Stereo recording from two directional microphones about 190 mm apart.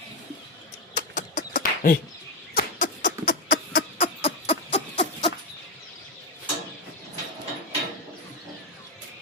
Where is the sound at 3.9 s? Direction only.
35° left (ahead or behind).